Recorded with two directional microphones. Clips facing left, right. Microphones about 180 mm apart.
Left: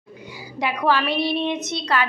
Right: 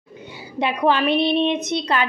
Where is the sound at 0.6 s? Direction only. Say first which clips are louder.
Right 2 dB; 20° right (ahead or behind).